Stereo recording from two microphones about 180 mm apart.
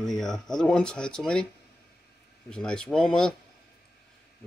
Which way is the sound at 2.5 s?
5° left (ahead or behind).